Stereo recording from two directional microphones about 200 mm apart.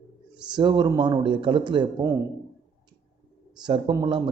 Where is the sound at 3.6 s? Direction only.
20° right (ahead or behind).